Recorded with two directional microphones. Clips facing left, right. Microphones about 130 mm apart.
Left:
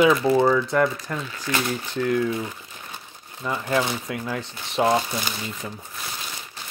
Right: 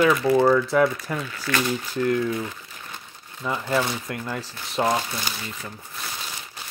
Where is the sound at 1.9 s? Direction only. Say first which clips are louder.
Left 1 dB; centre (ahead or behind).